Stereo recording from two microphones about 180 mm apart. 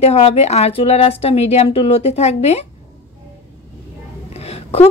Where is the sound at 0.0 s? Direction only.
35° left (ahead or behind).